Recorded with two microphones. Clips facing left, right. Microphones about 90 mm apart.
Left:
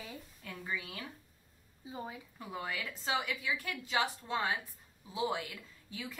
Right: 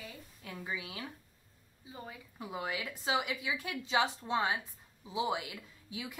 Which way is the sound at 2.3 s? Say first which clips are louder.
Right 3 dB; 15° right (ahead or behind).